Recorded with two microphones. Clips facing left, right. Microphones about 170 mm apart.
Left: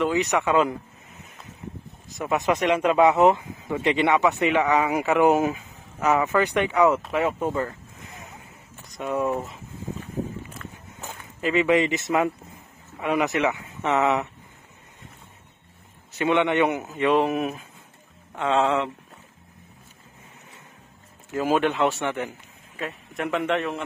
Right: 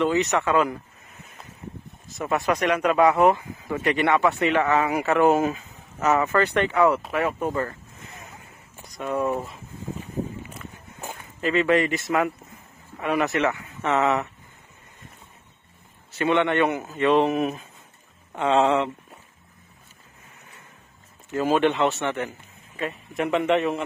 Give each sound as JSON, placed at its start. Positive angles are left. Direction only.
{"t": 0.0, "sound": "speech", "side_deg": 10}
{"t": 2.0, "sound": "speech", "side_deg": 15}
{"t": 7.4, "sound": "a man's voice", "side_deg": 0}
{"t": 9.0, "sound": "a man's voice", "side_deg": 0}
{"t": 10.5, "sound": "walk", "side_deg": -5}
{"t": 11.4, "sound": "speech", "side_deg": 15}
{"t": 16.2, "sound": "a man's voice", "side_deg": 15}
{"t": 21.3, "sound": "speech", "side_deg": 5}
{"t": 22.8, "sound": "a man's voice", "side_deg": 0}